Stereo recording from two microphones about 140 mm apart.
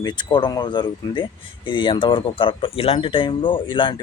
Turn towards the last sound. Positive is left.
turn(degrees=35)  # may be behind; listen again after turning